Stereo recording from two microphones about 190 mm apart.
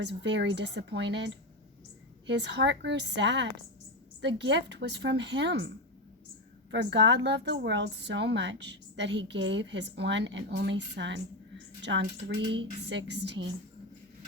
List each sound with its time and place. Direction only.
0.0 s a woman's voice: 70° right (ahead or behind)